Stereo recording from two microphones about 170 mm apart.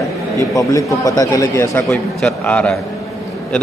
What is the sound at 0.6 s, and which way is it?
Speech, 20° left (ahead or behind).